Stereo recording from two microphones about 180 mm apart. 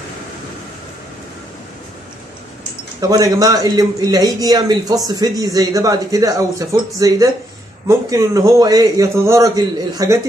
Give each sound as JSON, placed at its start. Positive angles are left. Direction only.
{"t": 3.0, "sound": "a man's voice", "side_deg": -20}